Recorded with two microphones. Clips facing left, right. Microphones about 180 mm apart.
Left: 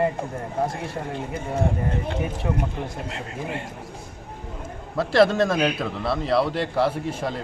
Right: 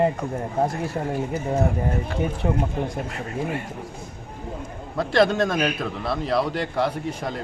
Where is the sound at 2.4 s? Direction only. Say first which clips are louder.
Right 3 dB; 30° right (ahead or behind).